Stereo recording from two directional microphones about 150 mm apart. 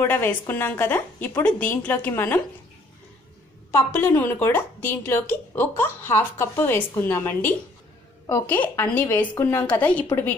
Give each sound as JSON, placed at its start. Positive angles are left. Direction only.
{"t": 0.0, "sound": "a woman's voice", "side_deg": 15}
{"t": 3.7, "sound": "a woman's voice", "side_deg": 15}